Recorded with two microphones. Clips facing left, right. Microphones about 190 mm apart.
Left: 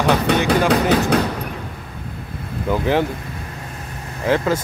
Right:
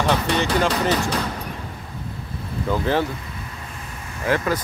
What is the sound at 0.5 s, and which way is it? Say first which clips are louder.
Speech: left 5 dB; 65° left (ahead or behind).